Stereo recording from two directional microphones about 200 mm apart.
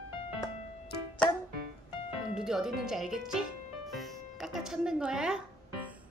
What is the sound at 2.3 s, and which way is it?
Speech, centre (ahead or behind).